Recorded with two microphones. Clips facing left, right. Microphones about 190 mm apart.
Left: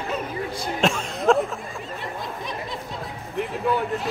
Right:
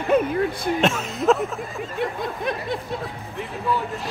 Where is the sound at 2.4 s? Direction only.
55° right (ahead or behind).